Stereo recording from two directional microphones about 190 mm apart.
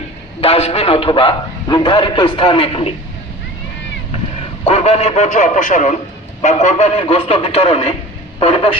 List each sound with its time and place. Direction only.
0.4 s a man's voice: 30° left (ahead or behind)
4.6 s a man's voice: 35° left (ahead or behind)